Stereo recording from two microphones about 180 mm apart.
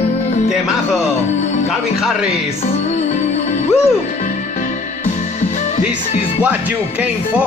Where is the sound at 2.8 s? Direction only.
40° left (ahead or behind).